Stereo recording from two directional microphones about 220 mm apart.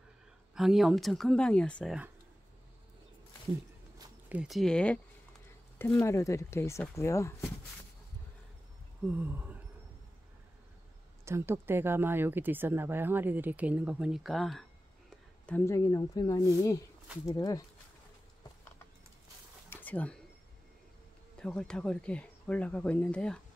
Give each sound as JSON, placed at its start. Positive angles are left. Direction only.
{"t": 0.6, "sound": "speech", "side_deg": 0}
{"t": 4.3, "sound": "speech", "side_deg": 0}
{"t": 9.0, "sound": "speech", "side_deg": -10}
{"t": 11.2, "sound": "speech", "side_deg": -10}
{"t": 19.7, "sound": "a sound", "side_deg": 5}
{"t": 21.4, "sound": "speech", "side_deg": 5}